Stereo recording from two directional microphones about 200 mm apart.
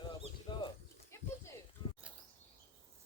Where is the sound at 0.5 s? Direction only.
20° left (ahead or behind).